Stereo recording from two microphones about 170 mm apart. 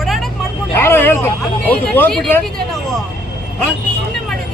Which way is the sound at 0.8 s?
15° left (ahead or behind).